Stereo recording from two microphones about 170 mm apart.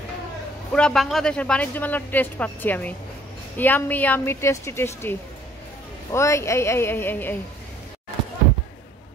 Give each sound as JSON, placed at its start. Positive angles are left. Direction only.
{"t": 0.7, "sound": "a man's voice", "side_deg": 5}
{"t": 6.1, "sound": "a man's voice", "side_deg": 15}